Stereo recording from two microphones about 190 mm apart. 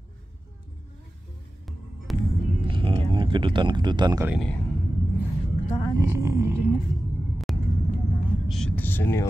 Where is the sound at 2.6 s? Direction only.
25° right (ahead or behind).